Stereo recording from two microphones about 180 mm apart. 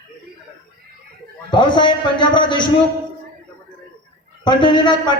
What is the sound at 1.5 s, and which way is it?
A man's voice, 25° left (ahead or behind).